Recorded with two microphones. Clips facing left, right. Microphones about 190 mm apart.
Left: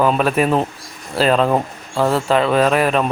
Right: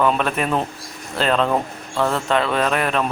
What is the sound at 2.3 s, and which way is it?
Speech, 5° left (ahead or behind).